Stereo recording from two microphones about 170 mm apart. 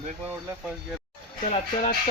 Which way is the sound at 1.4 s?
40° left (ahead or behind).